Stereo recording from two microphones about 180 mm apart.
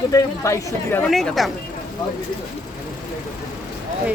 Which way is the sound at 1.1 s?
Centre (ahead or behind).